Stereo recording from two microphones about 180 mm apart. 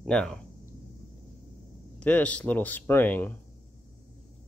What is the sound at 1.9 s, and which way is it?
Speech, 5° left (ahead or behind).